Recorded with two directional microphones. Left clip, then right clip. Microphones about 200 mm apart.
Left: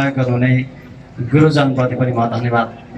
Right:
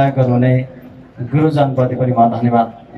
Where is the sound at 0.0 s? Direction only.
20° right (ahead or behind).